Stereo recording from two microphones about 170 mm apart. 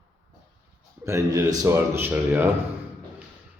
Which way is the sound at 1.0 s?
20° right (ahead or behind).